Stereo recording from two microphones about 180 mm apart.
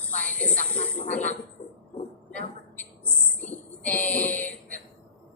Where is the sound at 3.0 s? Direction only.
10° left (ahead or behind).